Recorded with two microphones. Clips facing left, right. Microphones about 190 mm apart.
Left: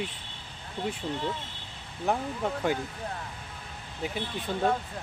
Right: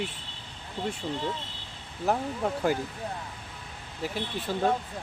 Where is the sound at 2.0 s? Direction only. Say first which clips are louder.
Right 1 dB; 5° right (ahead or behind).